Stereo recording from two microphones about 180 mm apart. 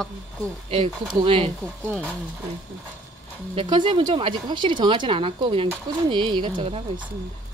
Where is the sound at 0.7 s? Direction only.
30° right (ahead or behind).